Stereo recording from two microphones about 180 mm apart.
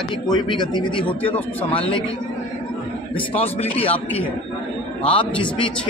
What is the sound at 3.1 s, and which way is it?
Speech, 35° left (ahead or behind).